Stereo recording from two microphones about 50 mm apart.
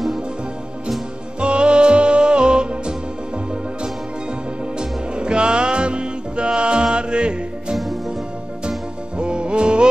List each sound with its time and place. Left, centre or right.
1.4 s music: centre
4.7 s music: centre
7.7 s music: centre
9.2 s music: centre